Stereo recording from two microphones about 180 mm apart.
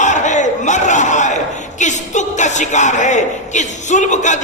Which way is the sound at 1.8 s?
40° left (ahead or behind).